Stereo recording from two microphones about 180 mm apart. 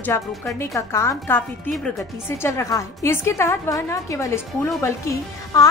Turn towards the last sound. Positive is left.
turn(degrees=15)  # may be behind; listen again after turning